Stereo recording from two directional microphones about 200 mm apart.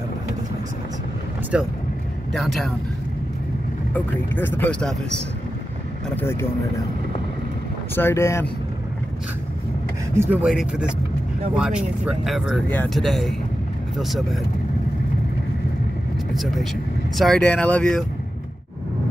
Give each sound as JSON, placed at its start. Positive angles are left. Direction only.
{"t": 1.5, "sound": "speech", "side_deg": -5}
{"t": 3.9, "sound": "speech", "side_deg": 10}
{"t": 6.0, "sound": "speech", "side_deg": 10}
{"t": 7.9, "sound": "speech", "side_deg": 10}
{"t": 10.1, "sound": "speech", "side_deg": -10}
{"t": 16.3, "sound": "speech", "side_deg": 0}